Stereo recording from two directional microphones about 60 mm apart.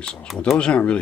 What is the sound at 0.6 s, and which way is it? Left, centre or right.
Speech, centre.